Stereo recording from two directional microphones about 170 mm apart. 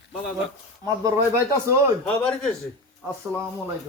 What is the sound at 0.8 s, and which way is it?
Speech, 20° right (ahead or behind).